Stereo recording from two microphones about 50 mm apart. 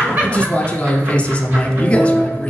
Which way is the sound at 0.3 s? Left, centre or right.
Left.